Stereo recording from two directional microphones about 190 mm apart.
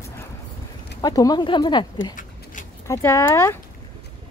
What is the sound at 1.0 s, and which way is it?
Speech, 20° left (ahead or behind).